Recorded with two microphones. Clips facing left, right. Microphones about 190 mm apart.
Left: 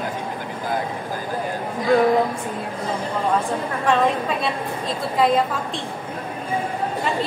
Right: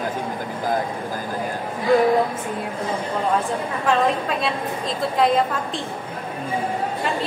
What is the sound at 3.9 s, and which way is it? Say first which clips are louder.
A woman's voice: left 1 dB; centre (ahead or behind).